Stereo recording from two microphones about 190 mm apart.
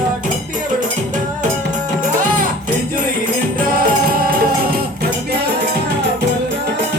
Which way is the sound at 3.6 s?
45° right (ahead or behind).